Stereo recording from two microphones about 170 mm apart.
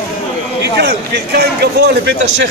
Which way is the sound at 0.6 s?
75° right (ahead or behind).